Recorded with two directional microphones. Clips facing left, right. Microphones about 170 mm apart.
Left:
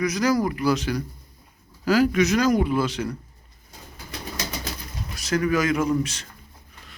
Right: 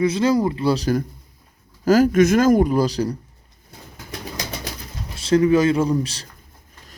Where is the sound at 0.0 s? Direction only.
25° right (ahead or behind).